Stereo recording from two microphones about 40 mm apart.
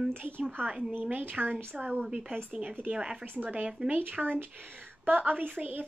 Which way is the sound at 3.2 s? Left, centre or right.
Right.